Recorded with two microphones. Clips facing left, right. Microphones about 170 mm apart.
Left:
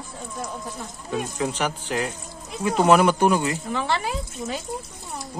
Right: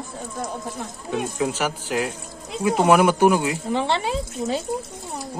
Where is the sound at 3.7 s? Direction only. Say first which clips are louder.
Right 6 dB; 25° right (ahead or behind).